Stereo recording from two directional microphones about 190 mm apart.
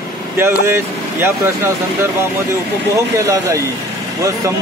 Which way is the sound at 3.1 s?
15° right (ahead or behind).